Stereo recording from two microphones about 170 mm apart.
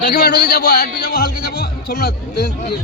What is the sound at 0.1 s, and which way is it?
A man's voice, 65° left (ahead or behind).